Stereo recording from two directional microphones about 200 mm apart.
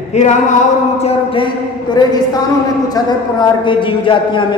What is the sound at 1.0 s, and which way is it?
A man's voice, 30° left (ahead or behind).